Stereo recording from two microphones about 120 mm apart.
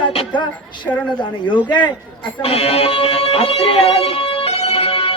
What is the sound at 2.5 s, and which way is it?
Speech, 55° left (ahead or behind).